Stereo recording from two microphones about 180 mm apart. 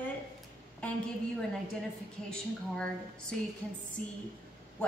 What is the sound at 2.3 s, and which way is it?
Speech, 5° left (ahead or behind).